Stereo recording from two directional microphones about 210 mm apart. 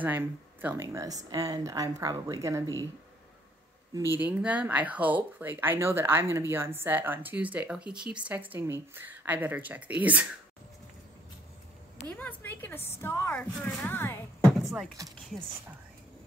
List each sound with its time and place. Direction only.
0.0 s speech: 10° right (ahead or behind)
4.1 s speech: 5° right (ahead or behind)
12.2 s a woman's voice: 10° left (ahead or behind)
14.6 s speech: centre (ahead or behind)